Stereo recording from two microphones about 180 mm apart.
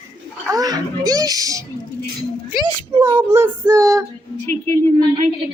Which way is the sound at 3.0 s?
15° right (ahead or behind).